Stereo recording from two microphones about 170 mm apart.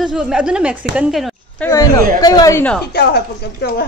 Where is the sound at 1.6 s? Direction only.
20° left (ahead or behind).